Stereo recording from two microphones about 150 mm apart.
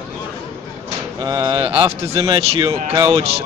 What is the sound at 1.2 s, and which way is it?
Speech, 25° right (ahead or behind).